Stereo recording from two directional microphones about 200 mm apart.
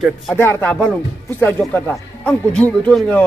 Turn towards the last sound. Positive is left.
turn(degrees=5)  # may be behind; listen again after turning